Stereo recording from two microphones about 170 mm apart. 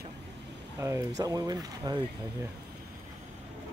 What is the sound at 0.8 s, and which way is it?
Speech, 15° right (ahead or behind).